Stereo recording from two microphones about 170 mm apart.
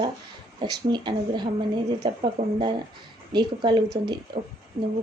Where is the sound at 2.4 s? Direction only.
40° right (ahead or behind).